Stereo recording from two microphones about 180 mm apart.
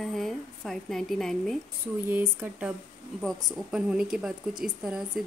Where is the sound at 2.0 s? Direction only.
10° right (ahead or behind).